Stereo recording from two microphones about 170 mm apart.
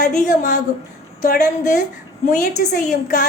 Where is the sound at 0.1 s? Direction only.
45° left (ahead or behind).